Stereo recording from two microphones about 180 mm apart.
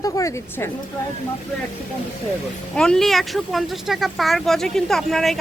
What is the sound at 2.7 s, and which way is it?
Speech, 5° left (ahead or behind).